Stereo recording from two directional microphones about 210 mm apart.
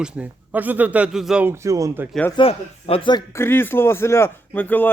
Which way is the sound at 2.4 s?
25° left (ahead or behind).